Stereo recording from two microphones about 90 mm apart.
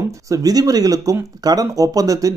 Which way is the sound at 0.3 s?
45° right (ahead or behind).